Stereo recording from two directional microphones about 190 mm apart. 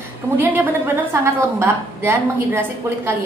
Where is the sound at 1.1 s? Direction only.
15° right (ahead or behind).